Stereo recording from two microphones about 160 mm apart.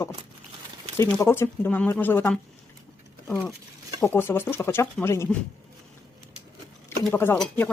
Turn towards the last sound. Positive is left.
turn(degrees=5)  # may be behind; listen again after turning